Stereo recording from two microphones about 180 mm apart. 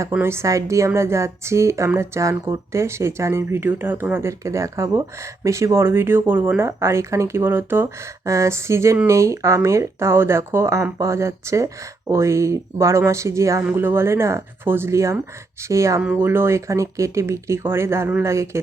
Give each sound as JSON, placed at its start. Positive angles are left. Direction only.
{"t": 0.0, "sound": "speech", "side_deg": -15}